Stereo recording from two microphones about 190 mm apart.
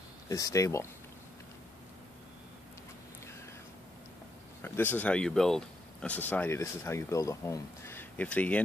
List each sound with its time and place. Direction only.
0.3 s speech: 15° left (ahead or behind)
4.6 s speech: 10° left (ahead or behind)